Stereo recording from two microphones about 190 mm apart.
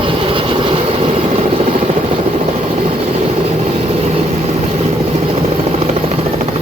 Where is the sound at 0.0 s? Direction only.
25° right (ahead or behind).